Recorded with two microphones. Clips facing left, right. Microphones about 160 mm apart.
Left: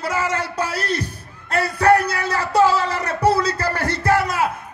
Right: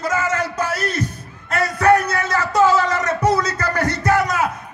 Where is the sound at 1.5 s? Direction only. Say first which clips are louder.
Even; 30° left (ahead or behind).